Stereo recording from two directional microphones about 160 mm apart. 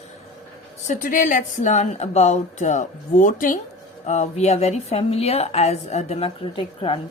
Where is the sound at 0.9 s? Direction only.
55° left (ahead or behind).